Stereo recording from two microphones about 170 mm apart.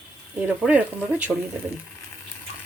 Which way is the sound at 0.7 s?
10° right (ahead or behind).